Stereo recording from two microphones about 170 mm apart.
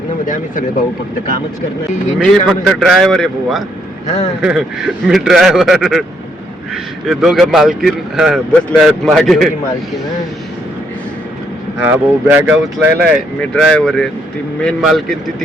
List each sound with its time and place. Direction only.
2.1 s speech: centre (ahead or behind)
4.0 s a man's voice: 40° left (ahead or behind)
4.4 s speech: 5° right (ahead or behind)
7.1 s speech: centre (ahead or behind)
11.8 s speech: 10° right (ahead or behind)
13.4 s speech: 5° left (ahead or behind)